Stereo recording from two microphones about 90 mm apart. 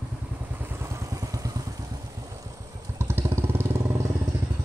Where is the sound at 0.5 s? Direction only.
25° right (ahead or behind).